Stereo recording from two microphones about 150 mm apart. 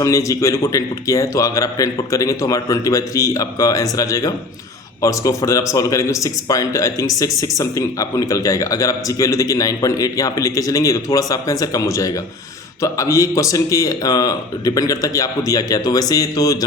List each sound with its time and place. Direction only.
0.0 s speech: 20° left (ahead or behind)